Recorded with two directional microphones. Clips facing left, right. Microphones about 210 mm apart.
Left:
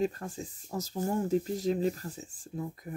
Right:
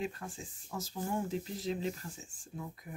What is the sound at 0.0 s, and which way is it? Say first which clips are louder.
Speech: left 8 dB; 40° left (ahead or behind).